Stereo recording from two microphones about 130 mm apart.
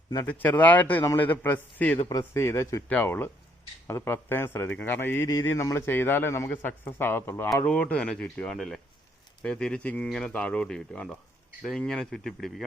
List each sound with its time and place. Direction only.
0.3 s speech: 15° left (ahead or behind)
2.0 s speech: 25° left (ahead or behind); by 12.6 s centre (ahead or behind)